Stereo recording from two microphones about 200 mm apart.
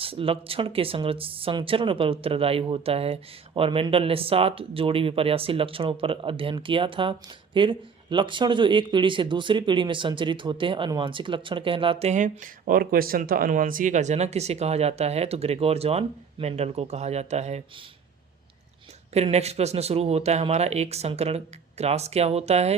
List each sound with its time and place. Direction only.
0.0 s speech: 30° right (ahead or behind)
19.1 s speech: 30° right (ahead or behind)